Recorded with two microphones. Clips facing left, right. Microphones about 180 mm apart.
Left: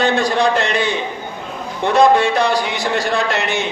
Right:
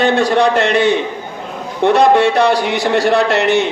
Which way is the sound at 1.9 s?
65° right (ahead or behind).